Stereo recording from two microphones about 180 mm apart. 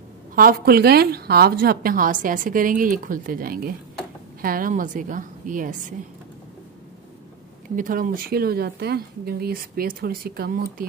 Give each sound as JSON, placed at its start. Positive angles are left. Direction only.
{"t": 0.4, "sound": "a woman's voice", "side_deg": -55}
{"t": 7.7, "sound": "speech", "side_deg": -50}